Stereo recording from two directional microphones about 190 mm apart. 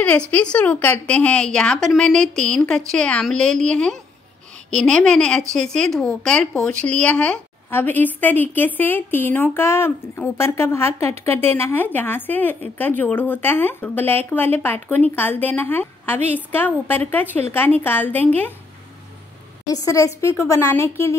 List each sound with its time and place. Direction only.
0.3 s a woman's voice: 5° left (ahead or behind)
19.7 s speech: 15° left (ahead or behind)